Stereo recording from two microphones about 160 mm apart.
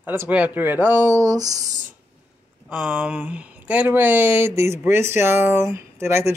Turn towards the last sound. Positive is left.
turn(degrees=-15)  # may be behind; listen again after turning